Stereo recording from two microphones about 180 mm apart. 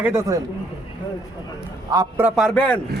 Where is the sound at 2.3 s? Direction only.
Centre (ahead or behind).